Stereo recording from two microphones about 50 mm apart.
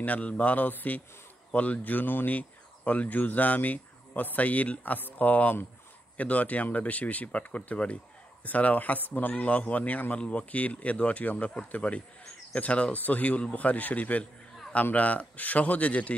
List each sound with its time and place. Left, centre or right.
0.0 s speech: left